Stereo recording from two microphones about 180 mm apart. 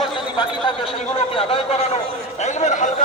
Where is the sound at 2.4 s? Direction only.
40° left (ahead or behind).